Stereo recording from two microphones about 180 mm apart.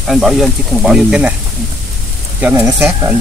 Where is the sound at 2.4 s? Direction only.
10° right (ahead or behind).